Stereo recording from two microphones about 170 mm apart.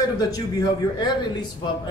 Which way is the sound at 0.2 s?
20° left (ahead or behind).